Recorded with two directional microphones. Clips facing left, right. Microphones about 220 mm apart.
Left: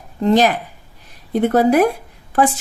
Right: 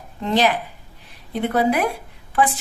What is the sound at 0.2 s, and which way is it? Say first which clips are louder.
Speech: left 5 dB; 45° left (ahead or behind).